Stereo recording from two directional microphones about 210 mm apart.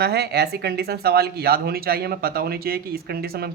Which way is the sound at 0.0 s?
50° right (ahead or behind).